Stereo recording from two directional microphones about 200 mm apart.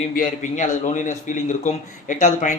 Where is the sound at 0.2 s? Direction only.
40° left (ahead or behind).